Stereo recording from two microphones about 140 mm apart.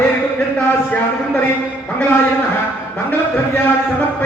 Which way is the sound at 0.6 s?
10° left (ahead or behind).